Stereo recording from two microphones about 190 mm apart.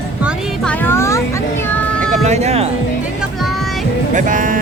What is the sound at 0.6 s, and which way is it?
Speech, 15° left (ahead or behind).